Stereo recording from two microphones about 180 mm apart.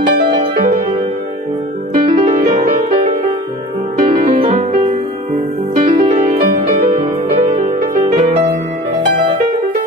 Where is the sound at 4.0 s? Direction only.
35° right (ahead or behind).